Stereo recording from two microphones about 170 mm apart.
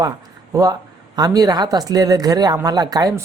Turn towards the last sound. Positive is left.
turn(degrees=-20)  # may be behind; listen again after turning